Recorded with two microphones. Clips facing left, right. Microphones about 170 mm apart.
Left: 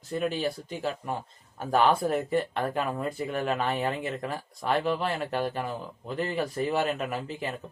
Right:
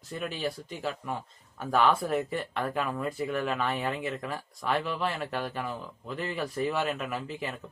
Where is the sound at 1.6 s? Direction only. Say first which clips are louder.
Left 2 dB; 35° left (ahead or behind).